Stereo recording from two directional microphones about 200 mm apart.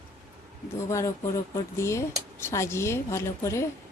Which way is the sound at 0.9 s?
15° left (ahead or behind).